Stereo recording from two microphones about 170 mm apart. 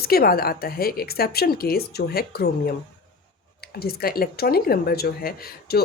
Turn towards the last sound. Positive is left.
turn(degrees=65)  # may be behind; listen again after turning